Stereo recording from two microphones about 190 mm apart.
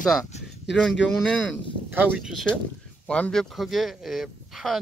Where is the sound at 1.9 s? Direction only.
5° right (ahead or behind).